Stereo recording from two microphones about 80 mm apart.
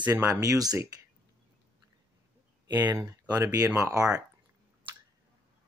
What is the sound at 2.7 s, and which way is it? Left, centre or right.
Speech, right.